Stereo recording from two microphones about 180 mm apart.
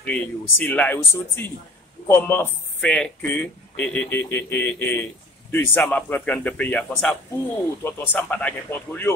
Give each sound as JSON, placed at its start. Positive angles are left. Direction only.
{"t": 0.0, "sound": "speech", "side_deg": 10}